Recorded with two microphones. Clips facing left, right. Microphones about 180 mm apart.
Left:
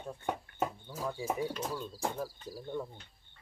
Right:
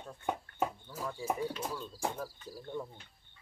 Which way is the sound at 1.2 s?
5° right (ahead or behind).